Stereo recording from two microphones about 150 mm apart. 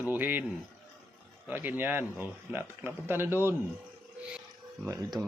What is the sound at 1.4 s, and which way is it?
Speech, 10° right (ahead or behind).